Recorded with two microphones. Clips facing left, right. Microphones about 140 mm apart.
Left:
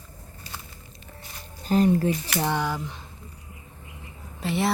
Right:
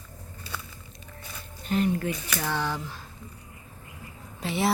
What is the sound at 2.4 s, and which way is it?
Speech, 15° left (ahead or behind).